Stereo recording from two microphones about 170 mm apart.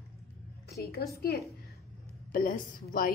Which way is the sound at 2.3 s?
55° left (ahead or behind).